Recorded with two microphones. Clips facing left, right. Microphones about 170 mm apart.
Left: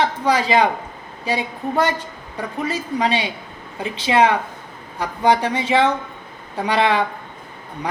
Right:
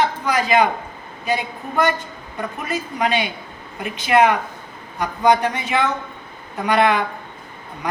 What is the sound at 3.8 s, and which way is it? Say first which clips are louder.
A woman's voice: right 1 dB; 30° left (ahead or behind).